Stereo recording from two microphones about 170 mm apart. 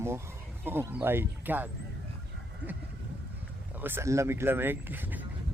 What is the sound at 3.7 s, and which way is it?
A man's voice, 10° right (ahead or behind).